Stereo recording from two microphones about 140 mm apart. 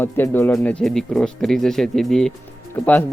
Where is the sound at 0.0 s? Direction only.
15° left (ahead or behind).